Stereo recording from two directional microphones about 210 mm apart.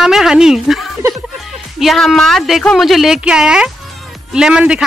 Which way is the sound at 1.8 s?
Centre (ahead or behind).